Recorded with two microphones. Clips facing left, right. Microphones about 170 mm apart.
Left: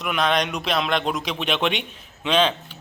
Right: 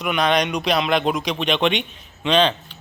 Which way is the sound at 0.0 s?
Centre (ahead or behind).